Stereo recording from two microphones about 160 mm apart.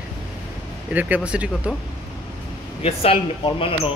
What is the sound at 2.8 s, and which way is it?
Speech, 35° left (ahead or behind).